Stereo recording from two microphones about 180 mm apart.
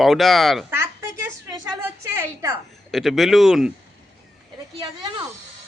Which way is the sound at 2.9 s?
Centre (ahead or behind).